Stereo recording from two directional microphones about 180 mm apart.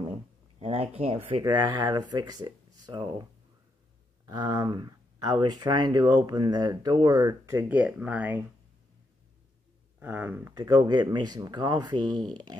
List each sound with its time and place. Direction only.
0.6 s speech: 35° right (ahead or behind)
1.4 s speech: 20° right (ahead or behind)
4.3 s speech: 25° right (ahead or behind); by 8.4 s 10° right (ahead or behind)
9.9 s speech: 10° right (ahead or behind)